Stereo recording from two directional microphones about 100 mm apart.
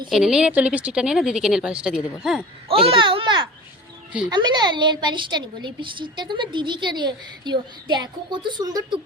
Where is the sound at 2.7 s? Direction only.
65° right (ahead or behind); by 9.0 s 45° right (ahead or behind).